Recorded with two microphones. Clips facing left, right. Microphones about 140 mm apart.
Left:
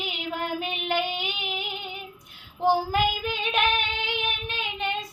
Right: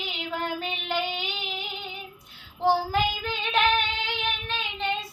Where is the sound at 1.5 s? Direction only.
15° left (ahead or behind).